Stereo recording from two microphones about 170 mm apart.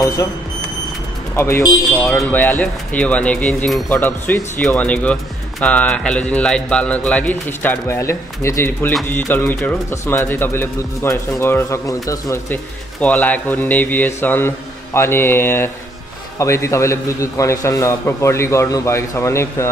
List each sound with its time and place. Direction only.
1.3 s speech: 15° left (ahead or behind)
1.9 s speech: 5° left (ahead or behind)